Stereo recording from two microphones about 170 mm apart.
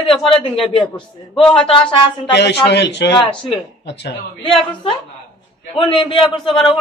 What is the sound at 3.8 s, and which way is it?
Speech, 90° left.